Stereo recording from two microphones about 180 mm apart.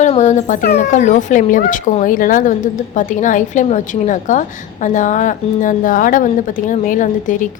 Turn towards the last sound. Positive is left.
turn(degrees=45)  # may be behind; listen again after turning